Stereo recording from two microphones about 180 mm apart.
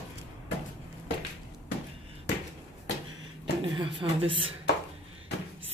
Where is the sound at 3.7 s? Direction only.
30° right (ahead or behind).